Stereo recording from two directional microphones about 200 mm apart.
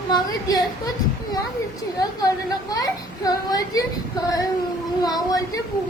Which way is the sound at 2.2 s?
20° left (ahead or behind).